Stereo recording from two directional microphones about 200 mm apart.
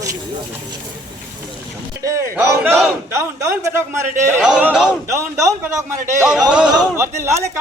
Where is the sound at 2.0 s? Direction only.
15° right (ahead or behind).